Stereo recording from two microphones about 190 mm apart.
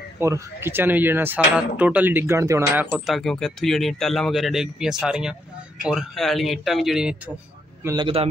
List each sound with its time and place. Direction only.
0.2 s speech: 15° right (ahead or behind)
2.9 s speech: centre (ahead or behind)
7.8 s a man's voice: 25° right (ahead or behind)